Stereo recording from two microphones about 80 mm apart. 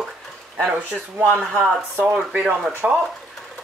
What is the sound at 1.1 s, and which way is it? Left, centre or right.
Speech, right.